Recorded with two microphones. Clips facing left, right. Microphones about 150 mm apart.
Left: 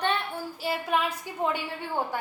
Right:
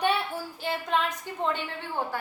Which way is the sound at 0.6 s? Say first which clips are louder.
Left 1 dB; 5° left (ahead or behind).